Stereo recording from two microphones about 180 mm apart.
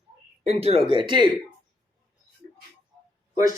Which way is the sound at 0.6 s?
30° right (ahead or behind).